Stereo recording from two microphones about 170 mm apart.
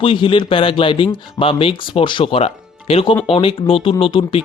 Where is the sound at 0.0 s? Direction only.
30° left (ahead or behind).